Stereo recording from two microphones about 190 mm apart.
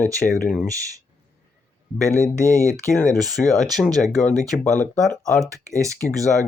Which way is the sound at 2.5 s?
15° right (ahead or behind).